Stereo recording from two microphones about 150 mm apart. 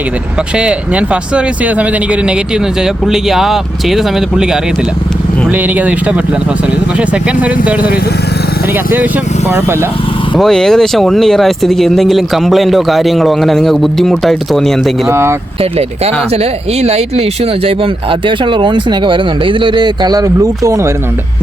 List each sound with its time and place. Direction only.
0.6 s speech: 10° right (ahead or behind)
3.1 s speech: centre (ahead or behind)
10.3 s speech: 5° left (ahead or behind)
15.1 s speech: 15° right (ahead or behind)
16.4 s speech: 45° right (ahead or behind); by 20.9 s 20° right (ahead or behind)